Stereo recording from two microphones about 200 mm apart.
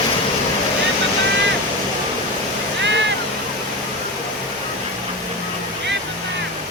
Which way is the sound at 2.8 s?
65° right (ahead or behind).